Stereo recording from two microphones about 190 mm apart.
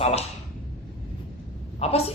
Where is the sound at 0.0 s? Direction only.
35° left (ahead or behind).